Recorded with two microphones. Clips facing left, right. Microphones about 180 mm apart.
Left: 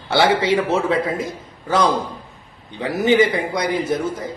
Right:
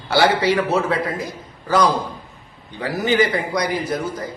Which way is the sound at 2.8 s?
25° left (ahead or behind).